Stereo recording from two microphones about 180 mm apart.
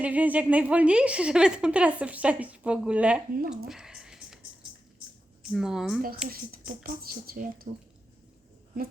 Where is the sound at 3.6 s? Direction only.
5° right (ahead or behind).